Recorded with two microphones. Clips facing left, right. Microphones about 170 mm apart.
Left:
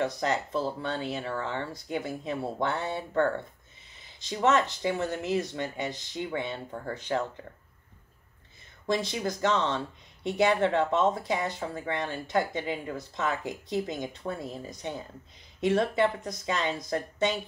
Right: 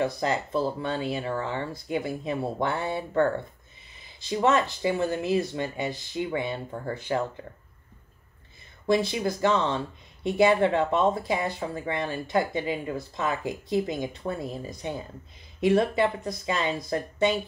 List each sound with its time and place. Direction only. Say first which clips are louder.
0.0 s speech: right 2 dB; 10° right (ahead or behind)
8.8 s speech: right 5 dB; 10° right (ahead or behind)